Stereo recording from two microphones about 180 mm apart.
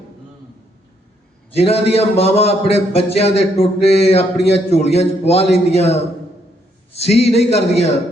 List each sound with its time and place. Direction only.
1.5 s speech: 35° left (ahead or behind)
7.0 s speech: 35° left (ahead or behind)